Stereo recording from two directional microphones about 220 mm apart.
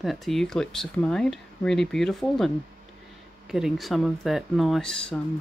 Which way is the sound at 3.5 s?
Centre (ahead or behind).